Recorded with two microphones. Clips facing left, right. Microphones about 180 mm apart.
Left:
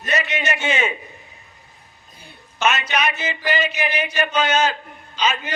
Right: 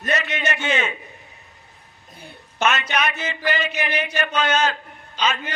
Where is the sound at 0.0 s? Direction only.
55° right (ahead or behind).